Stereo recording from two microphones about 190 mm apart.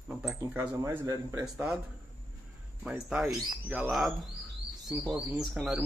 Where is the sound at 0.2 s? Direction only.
5° right (ahead or behind).